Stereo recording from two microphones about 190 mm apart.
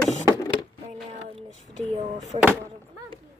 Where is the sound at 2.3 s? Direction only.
40° right (ahead or behind).